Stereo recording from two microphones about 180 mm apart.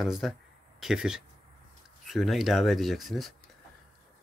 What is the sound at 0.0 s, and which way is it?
Speech, centre (ahead or behind).